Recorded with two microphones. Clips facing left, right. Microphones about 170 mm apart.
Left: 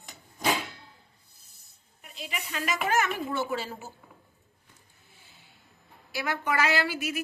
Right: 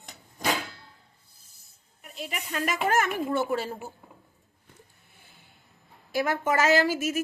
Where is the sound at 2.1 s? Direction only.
50° right (ahead or behind).